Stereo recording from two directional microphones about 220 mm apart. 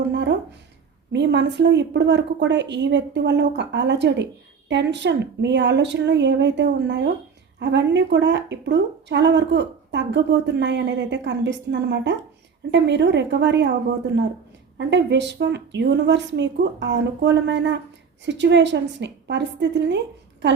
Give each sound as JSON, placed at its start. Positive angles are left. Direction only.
{"t": 0.1, "sound": "a sound", "side_deg": -50}
{"t": 1.1, "sound": "a woman's voice", "side_deg": -50}
{"t": 14.8, "sound": "a woman's voice", "side_deg": -55}